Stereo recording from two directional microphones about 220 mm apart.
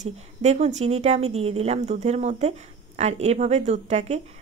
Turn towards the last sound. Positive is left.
turn(degrees=-30)  # may be behind; listen again after turning